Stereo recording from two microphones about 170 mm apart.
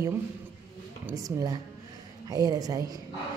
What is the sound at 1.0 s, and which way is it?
A woman's voice, 20° right (ahead or behind).